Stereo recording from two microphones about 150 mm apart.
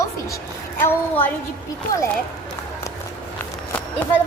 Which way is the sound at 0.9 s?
10° left (ahead or behind).